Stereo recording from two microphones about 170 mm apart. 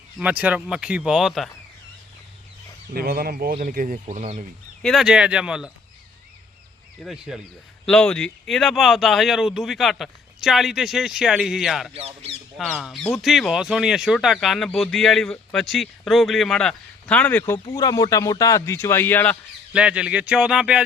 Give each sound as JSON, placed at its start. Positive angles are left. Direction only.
{"t": 0.2, "sound": "speech", "side_deg": -10}
{"t": 2.9, "sound": "speech", "side_deg": -60}
{"t": 4.8, "sound": "speech", "side_deg": 0}
{"t": 7.0, "sound": "speech", "side_deg": -5}
{"t": 11.9, "sound": "speech", "side_deg": -35}
{"t": 12.5, "sound": "speech", "side_deg": 0}
{"t": 19.7, "sound": "speech", "side_deg": -5}